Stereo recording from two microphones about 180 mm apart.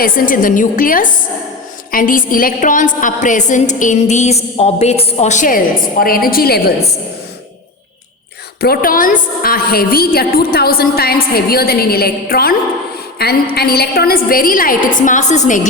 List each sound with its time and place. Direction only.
0.0 s a woman's voice: 50° left (ahead or behind)
8.6 s a woman's voice: 55° left (ahead or behind)